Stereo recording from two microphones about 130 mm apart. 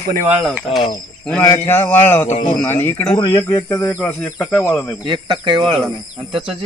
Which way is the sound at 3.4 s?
15° left (ahead or behind).